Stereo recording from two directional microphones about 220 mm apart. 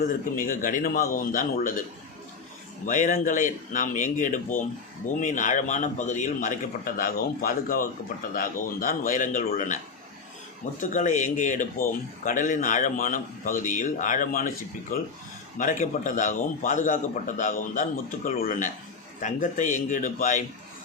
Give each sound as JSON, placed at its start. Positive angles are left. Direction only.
{"t": 0.0, "sound": "speech", "side_deg": 40}
{"t": 2.8, "sound": "speech", "side_deg": 35}